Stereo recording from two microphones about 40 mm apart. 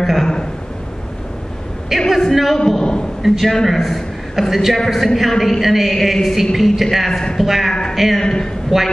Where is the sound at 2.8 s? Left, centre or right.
Centre.